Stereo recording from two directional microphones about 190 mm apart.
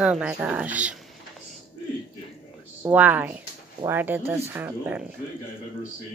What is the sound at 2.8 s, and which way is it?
A woman's voice, 10° right (ahead or behind).